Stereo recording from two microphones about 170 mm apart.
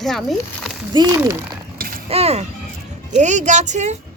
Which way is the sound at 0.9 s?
20° right (ahead or behind).